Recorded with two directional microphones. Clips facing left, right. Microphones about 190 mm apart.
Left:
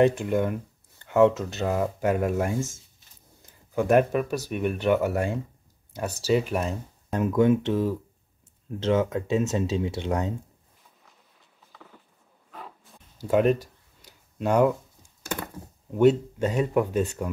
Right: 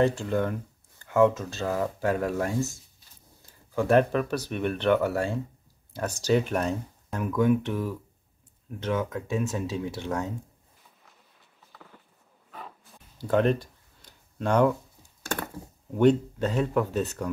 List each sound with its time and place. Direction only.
0.0 s speech: 15° left (ahead or behind)
3.7 s speech: 15° left (ahead or behind)
7.1 s speech: 25° left (ahead or behind)
11.7 s a sound: centre (ahead or behind)
12.4 s wild animals: centre (ahead or behind)
13.2 s a sound: 10° left (ahead or behind)
16.0 s speech: 10° left (ahead or behind)